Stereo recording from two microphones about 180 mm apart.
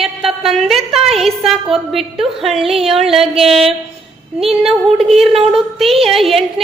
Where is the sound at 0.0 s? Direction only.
Centre (ahead or behind).